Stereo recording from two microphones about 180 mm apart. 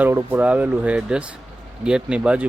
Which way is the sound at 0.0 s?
10° right (ahead or behind).